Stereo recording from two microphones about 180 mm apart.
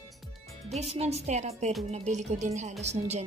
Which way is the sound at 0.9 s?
35° right (ahead or behind).